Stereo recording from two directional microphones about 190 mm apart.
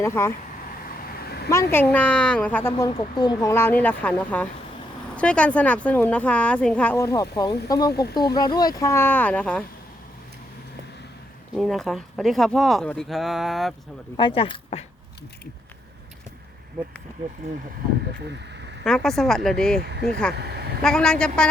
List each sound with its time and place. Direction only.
0.0 s speech: 15° left (ahead or behind)
1.0 s vehicle: 55° left (ahead or behind)
1.5 s speech: 15° left (ahead or behind)
2.9 s speech: 25° left (ahead or behind)
7.9 s speech: 55° left (ahead or behind)
8.2 s speech: 20° left (ahead or behind); by 9.6 s 5° left (ahead or behind)
11.5 s speech: centre (ahead or behind)
14.2 s speech: 25° left (ahead or behind)
18.9 s speech: 5° left (ahead or behind)
19.8 s speech: 60° right (ahead or behind)
20.8 s speech: 5° left (ahead or behind)